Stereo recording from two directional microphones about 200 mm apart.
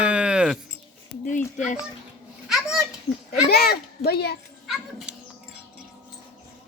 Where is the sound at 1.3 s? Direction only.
40° left (ahead or behind).